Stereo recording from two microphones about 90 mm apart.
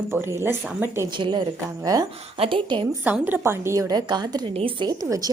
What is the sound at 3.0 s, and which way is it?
Speech, 20° right (ahead or behind).